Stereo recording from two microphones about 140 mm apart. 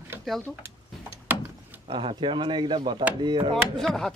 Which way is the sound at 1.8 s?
35° right (ahead or behind).